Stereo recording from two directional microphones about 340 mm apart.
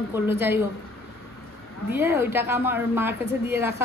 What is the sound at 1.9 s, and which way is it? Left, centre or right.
A woman's voice, centre.